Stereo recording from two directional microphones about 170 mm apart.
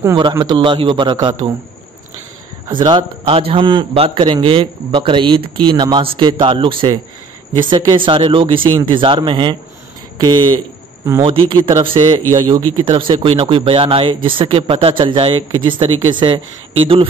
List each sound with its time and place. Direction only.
0.0 s speech: 20° right (ahead or behind)
2.7 s speech: 25° right (ahead or behind)